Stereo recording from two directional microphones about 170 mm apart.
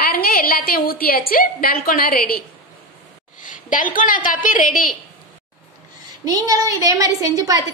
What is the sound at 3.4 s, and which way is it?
A woman's voice, 50° left (ahead or behind).